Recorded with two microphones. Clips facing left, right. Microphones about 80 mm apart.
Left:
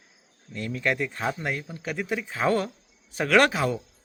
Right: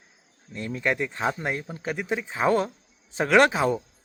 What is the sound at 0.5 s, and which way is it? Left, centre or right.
A man's voice, right.